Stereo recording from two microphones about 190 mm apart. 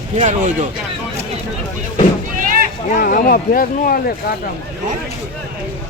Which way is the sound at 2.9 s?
50° left (ahead or behind).